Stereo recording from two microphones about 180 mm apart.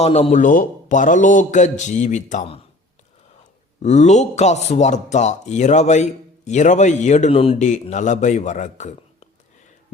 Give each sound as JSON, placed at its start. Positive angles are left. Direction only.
{"t": 0.0, "sound": "a man's voice", "side_deg": 35}
{"t": 3.8, "sound": "speech", "side_deg": 40}